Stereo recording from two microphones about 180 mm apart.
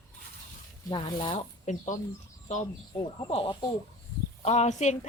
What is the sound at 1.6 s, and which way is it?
Speech, 45° left (ahead or behind).